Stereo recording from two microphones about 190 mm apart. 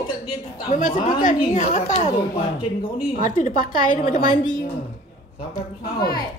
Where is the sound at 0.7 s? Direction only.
40° left (ahead or behind).